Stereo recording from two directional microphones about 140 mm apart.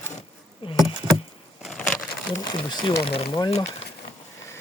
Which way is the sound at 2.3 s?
30° left (ahead or behind).